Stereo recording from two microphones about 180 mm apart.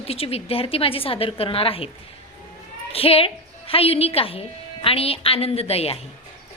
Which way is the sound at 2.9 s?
30° left (ahead or behind).